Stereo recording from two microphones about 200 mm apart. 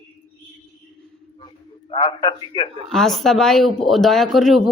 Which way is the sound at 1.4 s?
25° left (ahead or behind).